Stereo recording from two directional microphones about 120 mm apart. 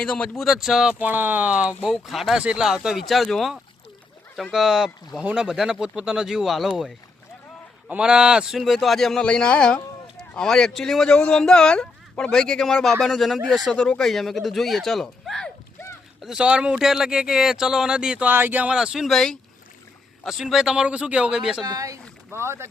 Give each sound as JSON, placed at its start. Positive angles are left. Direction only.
{"t": 0.0, "sound": "speech", "side_deg": 5}
{"t": 0.9, "sound": "speech", "side_deg": -15}
{"t": 21.6, "sound": "speech", "side_deg": -30}